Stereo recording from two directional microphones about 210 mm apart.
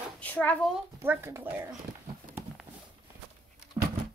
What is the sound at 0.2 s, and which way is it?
Speech, 10° left (ahead or behind).